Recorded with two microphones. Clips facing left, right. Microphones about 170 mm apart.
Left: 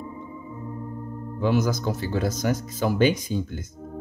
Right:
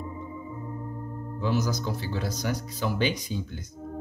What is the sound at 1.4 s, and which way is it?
Speech, 55° left (ahead or behind).